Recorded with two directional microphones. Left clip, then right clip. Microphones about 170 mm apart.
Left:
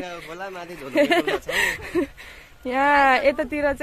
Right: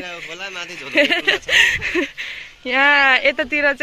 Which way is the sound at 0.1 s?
15° left (ahead or behind).